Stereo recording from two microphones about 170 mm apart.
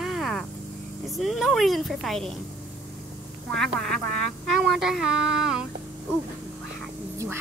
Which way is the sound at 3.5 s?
5° left (ahead or behind).